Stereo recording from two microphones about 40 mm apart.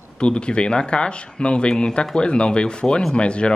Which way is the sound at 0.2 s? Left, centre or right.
Left.